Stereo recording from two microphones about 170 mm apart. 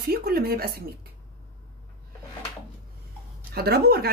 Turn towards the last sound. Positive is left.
turn(degrees=-65)  # may be behind; listen again after turning